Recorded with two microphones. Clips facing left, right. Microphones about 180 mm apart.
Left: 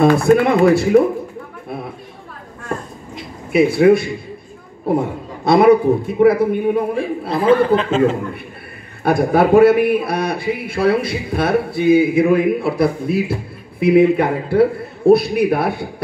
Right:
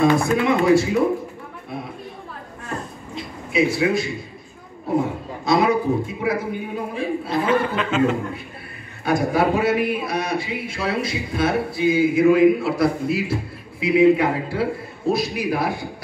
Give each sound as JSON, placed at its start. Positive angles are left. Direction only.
{"t": 0.0, "sound": "speech", "side_deg": 60}
{"t": 3.5, "sound": "speech", "side_deg": 60}
{"t": 5.4, "sound": "speech", "side_deg": 60}
{"t": 7.2, "sound": "a man's voice", "side_deg": 30}
{"t": 9.0, "sound": "speech", "side_deg": 60}